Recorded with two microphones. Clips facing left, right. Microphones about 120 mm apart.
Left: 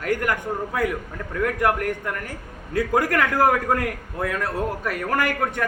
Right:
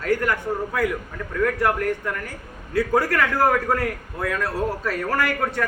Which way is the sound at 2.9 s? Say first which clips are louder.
Left 1 dB; 15° left (ahead or behind).